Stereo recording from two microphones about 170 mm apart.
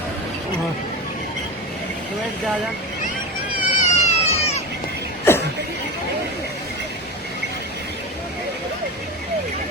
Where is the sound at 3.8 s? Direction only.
40° left (ahead or behind).